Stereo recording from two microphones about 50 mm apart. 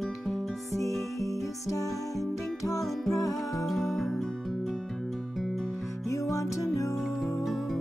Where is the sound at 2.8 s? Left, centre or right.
Centre.